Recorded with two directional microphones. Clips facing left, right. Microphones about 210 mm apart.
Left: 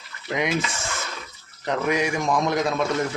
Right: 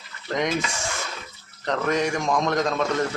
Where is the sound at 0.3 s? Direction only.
10° left (ahead or behind).